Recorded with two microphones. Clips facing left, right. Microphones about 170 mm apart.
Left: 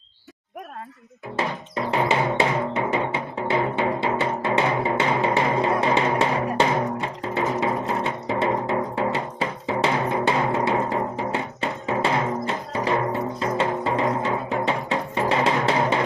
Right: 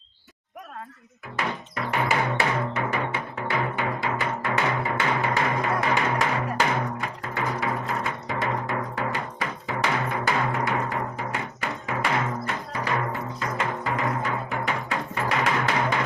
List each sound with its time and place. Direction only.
1.4 s music: 30° left (ahead or behind)